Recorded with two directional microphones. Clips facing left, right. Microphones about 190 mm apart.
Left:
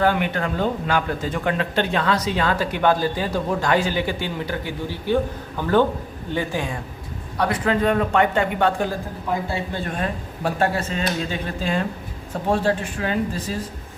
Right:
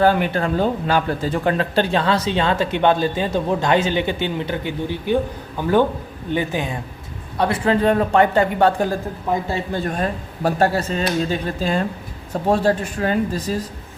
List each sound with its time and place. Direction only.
0.0 s speech: 35° right (ahead or behind)